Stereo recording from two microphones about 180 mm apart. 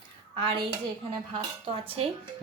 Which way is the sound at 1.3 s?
30° right (ahead or behind).